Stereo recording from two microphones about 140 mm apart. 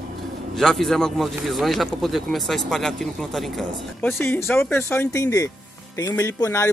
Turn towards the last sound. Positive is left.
turn(degrees=20)  # may be behind; listen again after turning